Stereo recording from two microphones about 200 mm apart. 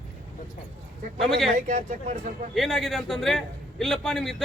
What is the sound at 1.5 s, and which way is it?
Speech, 35° right (ahead or behind).